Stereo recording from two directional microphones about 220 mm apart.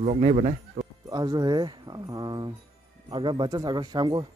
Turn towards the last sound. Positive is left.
turn(degrees=-20)  # may be behind; listen again after turning